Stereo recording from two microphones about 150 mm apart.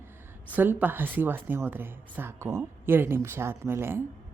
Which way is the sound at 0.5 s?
10° right (ahead or behind).